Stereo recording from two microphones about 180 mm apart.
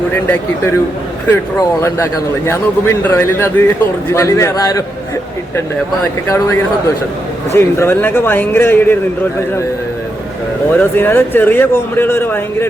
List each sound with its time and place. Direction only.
1.3 s speech: 15° left (ahead or behind)
6.2 s speech: 15° left (ahead or behind)
10.8 s speech: 10° left (ahead or behind)